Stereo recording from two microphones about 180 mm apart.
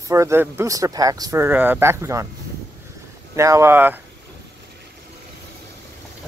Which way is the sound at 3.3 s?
15° right (ahead or behind).